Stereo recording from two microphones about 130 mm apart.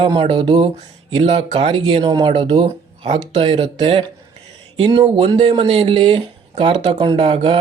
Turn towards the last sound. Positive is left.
turn(degrees=-45)  # may be behind; listen again after turning